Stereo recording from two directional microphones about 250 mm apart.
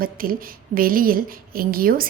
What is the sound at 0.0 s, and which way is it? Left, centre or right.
A woman's voice, right.